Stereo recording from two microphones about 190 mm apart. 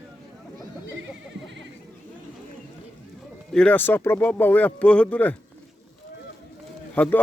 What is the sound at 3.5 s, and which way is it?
A man's voice, 5° left (ahead or behind).